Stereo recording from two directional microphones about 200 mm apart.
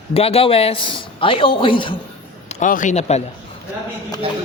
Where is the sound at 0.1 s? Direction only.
30° left (ahead or behind).